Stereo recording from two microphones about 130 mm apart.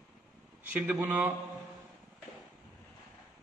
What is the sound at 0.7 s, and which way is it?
Speech, 15° right (ahead or behind).